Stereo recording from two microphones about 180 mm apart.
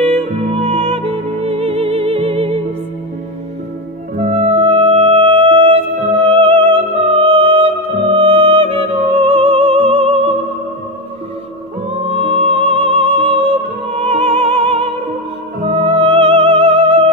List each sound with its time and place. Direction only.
0.0 s music: 35° right (ahead or behind)
4.2 s music: 35° right (ahead or behind)
12.0 s music: 35° right (ahead or behind)